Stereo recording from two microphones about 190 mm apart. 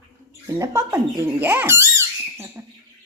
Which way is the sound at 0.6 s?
15° right (ahead or behind).